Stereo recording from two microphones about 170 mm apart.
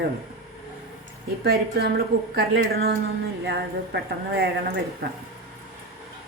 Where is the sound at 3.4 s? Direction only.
85° right.